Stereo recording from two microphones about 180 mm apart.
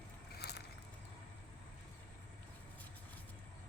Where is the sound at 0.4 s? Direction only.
65° left (ahead or behind).